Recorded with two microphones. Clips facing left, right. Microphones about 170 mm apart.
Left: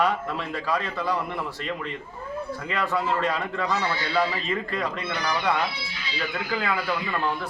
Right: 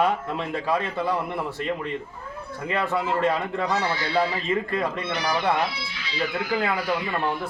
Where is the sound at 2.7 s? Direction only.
25° right (ahead or behind).